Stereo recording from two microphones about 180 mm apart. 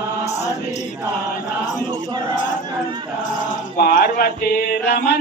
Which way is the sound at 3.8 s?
55° left (ahead or behind).